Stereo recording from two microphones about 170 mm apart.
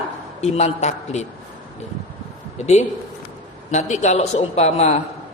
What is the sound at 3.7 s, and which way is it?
A woman's voice, 45° left (ahead or behind).